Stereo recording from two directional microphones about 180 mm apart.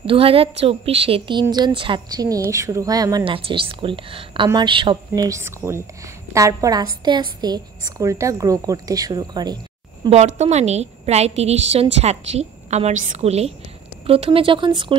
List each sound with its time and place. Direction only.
0.0 s a woman's voice: 30° right (ahead or behind)
10.0 s a woman's voice: 40° right (ahead or behind)